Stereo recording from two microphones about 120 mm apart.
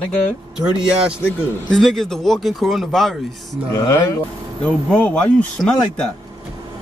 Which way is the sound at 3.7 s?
25° left (ahead or behind).